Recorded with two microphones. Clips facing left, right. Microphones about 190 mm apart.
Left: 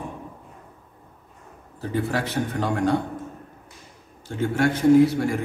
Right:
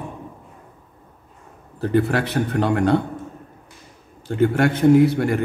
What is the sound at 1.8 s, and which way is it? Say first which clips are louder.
A man's voice: right 6 dB; 65° right (ahead or behind).